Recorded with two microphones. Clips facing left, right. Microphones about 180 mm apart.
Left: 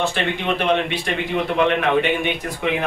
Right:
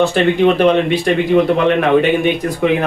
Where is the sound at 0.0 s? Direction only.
40° right (ahead or behind).